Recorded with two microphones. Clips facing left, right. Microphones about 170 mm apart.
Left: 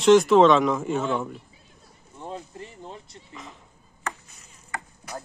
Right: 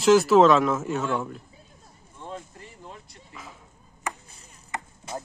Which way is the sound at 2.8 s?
25° left (ahead or behind).